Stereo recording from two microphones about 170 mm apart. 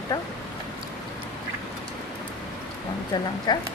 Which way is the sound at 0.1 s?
20° left (ahead or behind).